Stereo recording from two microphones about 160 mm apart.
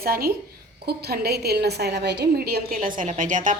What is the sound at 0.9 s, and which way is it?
A woman's voice, 80° right.